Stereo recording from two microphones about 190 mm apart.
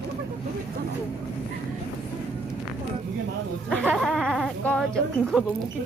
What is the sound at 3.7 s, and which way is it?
Speech, 5° left (ahead or behind).